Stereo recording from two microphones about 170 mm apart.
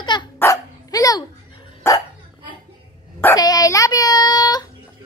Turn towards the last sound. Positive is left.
turn(degrees=25)  # may be behind; listen again after turning